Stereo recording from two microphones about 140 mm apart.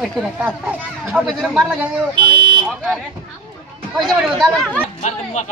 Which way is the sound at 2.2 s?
35° right (ahead or behind).